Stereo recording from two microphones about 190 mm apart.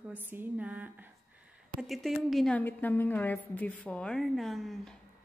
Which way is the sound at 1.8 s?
Centre (ahead or behind).